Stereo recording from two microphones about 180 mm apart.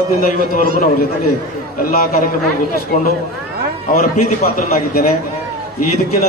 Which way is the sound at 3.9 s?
55° left (ahead or behind).